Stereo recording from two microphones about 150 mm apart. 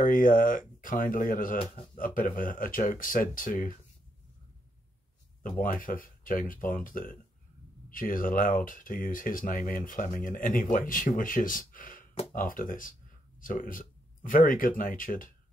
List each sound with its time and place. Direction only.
0.0 s speech: 65° left (ahead or behind)
5.4 s speech: 65° left (ahead or behind)